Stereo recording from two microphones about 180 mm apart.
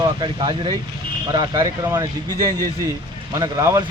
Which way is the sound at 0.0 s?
25° right (ahead or behind).